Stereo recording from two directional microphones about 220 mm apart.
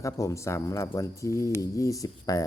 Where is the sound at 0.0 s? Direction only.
15° left (ahead or behind).